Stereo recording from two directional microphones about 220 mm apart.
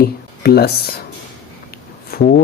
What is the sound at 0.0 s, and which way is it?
Speech, 45° left (ahead or behind).